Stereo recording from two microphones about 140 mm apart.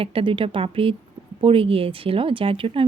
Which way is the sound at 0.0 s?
40° right (ahead or behind).